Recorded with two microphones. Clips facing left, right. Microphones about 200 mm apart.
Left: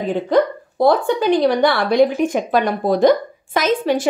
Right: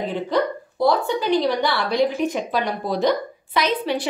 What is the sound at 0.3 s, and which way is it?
A woman's voice, 50° left (ahead or behind).